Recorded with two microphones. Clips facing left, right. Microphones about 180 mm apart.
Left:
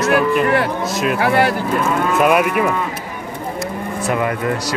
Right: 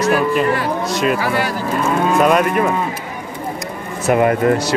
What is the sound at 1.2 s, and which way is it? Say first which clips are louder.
Speech: left 4 dB; 60° left (ahead or behind).